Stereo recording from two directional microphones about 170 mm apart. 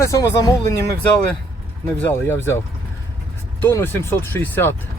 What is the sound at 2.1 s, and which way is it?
Speech, 15° left (ahead or behind).